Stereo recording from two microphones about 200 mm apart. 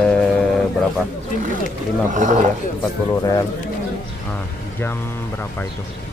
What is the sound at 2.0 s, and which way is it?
Speech, 40° right (ahead or behind).